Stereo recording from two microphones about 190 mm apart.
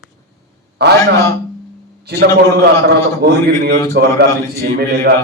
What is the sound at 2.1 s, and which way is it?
A man's voice, 60° right (ahead or behind).